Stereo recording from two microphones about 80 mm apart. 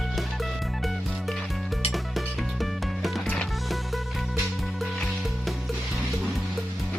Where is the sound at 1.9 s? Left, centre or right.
Centre.